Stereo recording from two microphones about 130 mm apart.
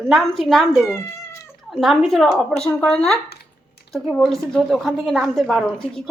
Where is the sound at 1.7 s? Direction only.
Centre (ahead or behind).